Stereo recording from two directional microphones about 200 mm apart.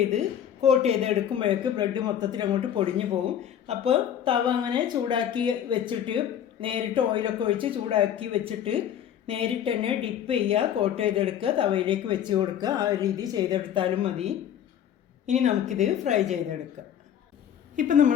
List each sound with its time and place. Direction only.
0.1 s a woman's voice: 35° right (ahead or behind)
17.7 s a woman's voice: 40° right (ahead or behind)